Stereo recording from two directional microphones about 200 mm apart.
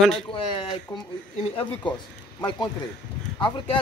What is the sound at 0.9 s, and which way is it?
Speech, 15° left (ahead or behind).